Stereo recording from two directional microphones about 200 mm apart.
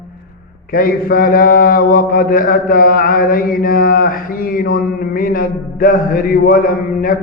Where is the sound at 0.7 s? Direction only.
45° left (ahead or behind).